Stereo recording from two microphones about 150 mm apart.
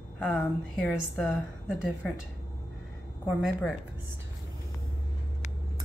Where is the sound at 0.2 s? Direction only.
5° left (ahead or behind).